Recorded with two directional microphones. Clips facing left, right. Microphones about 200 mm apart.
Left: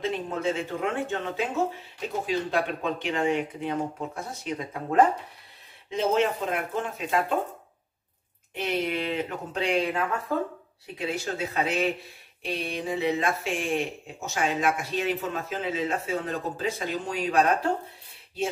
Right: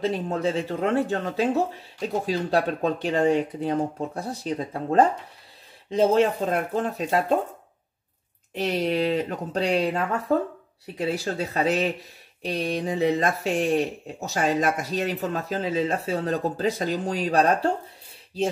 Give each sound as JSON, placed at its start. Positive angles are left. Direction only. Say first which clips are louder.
{"t": 0.0, "sound": "speech", "louder": "right 3 dB", "side_deg": -35}
{"t": 8.5, "sound": "speech", "louder": "right 4 dB", "side_deg": -40}
{"t": 11.1, "sound": "speech", "louder": "right 2 dB", "side_deg": -35}